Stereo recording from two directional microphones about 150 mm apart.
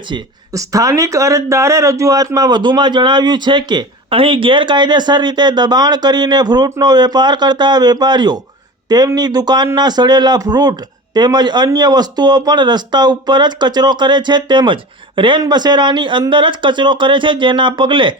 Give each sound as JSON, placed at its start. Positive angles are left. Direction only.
{"t": 0.1, "sound": "a man's voice", "side_deg": -20}